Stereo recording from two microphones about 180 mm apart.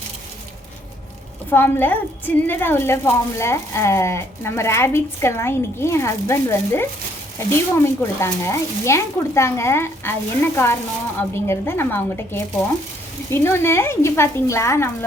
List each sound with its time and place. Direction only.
1.5 s a woman's voice: 10° left (ahead or behind)
11.2 s a woman's voice: 15° left (ahead or behind)